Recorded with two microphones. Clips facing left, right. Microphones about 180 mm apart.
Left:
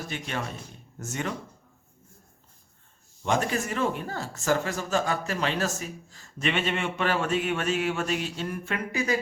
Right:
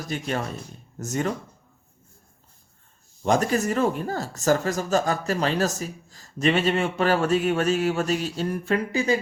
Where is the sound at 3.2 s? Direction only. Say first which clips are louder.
Right 5 dB; 40° right (ahead or behind).